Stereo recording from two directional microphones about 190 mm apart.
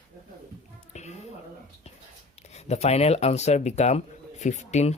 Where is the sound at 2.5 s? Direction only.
35° left (ahead or behind).